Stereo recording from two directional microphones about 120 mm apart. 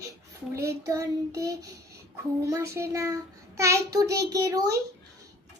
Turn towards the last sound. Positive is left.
turn(degrees=-30)  # may be behind; listen again after turning